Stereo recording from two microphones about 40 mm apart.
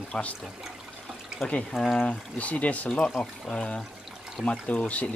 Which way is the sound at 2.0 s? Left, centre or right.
Left.